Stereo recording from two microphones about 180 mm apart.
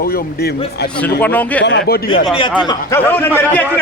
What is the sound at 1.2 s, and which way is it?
Speech, 10° left (ahead or behind).